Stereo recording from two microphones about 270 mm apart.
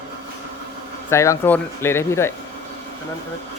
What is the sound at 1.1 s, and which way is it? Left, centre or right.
Speech, centre.